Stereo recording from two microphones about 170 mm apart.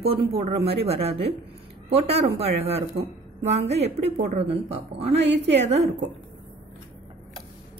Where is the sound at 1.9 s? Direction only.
35° right (ahead or behind).